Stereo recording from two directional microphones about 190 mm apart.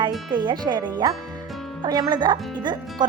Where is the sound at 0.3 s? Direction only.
25° right (ahead or behind).